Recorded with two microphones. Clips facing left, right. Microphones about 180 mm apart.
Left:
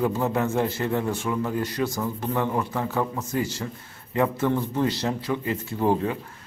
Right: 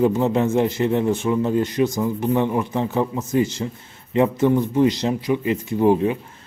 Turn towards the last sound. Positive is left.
turn(degrees=-15)  # may be behind; listen again after turning